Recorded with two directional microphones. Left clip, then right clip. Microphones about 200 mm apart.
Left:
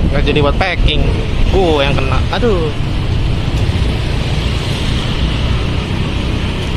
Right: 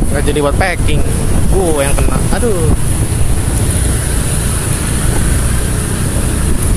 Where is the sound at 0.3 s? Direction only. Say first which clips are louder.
Even; 20° right (ahead or behind).